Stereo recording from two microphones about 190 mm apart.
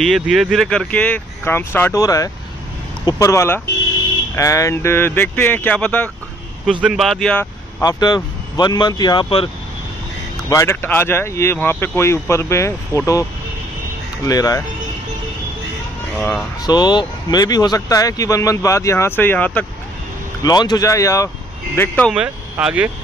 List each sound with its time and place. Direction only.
0.0 s speech: centre (ahead or behind)
7.8 s speech: 20° left (ahead or behind)
10.5 s speech: 15° left (ahead or behind)
14.2 s speech: 20° left (ahead or behind)
16.2 s speech: centre (ahead or behind)
16.6 s speech: 20° left (ahead or behind)
20.4 s speech: 20° left (ahead or behind)
22.1 s speech: 5° right (ahead or behind)